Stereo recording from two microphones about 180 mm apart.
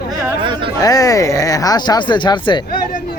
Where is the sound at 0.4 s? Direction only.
25° right (ahead or behind).